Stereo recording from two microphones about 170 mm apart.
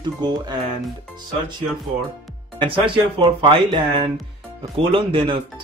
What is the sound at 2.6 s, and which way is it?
Speech, 30° right (ahead or behind).